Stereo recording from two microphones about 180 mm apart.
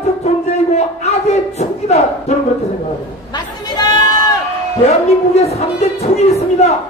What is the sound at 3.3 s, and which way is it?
Sheep, 25° left (ahead or behind).